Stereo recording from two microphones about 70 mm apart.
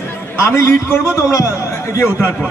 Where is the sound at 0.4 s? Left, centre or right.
Left.